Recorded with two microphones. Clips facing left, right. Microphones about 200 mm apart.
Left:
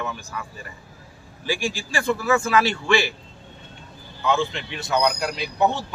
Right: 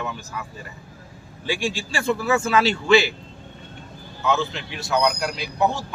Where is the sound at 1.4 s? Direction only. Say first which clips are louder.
Right 1 dB; 20° right (ahead or behind).